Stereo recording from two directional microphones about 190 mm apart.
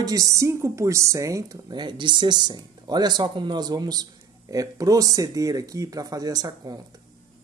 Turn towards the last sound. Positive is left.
turn(degrees=-20)  # may be behind; listen again after turning